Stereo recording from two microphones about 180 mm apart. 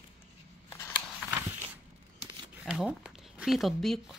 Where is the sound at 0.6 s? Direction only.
15° left (ahead or behind).